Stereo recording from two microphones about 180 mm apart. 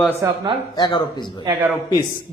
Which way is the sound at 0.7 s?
20° left (ahead or behind).